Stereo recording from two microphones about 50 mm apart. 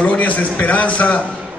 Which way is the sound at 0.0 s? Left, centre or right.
Left.